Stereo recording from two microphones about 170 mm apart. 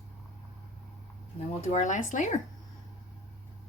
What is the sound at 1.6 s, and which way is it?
Speech, 45° left (ahead or behind).